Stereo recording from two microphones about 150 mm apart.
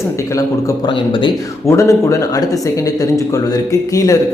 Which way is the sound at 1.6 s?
20° left (ahead or behind).